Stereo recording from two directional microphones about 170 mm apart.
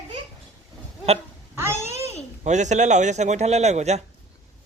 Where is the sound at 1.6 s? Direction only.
15° right (ahead or behind).